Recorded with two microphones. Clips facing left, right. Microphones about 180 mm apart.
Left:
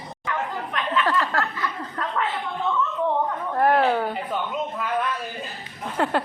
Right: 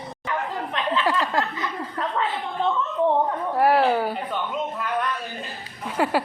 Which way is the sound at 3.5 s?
5° right (ahead or behind).